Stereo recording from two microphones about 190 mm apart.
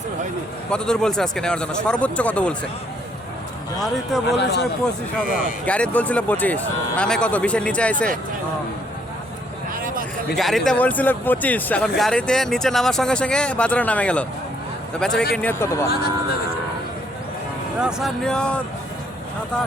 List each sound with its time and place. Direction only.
0.7 s speech: 5° left (ahead or behind)
4.4 s speech: 65° left (ahead or behind)
5.3 s speech: 45° left (ahead or behind)
5.6 s speech: 5° left (ahead or behind)
9.8 s a sound: 45° right (ahead or behind)
10.3 s speech: centre (ahead or behind)
17.7 s speech: 5° right (ahead or behind)